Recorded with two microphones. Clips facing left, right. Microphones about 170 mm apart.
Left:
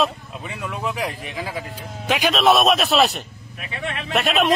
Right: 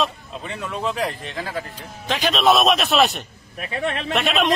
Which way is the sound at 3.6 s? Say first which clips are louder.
Right 5 dB; 40° right (ahead or behind).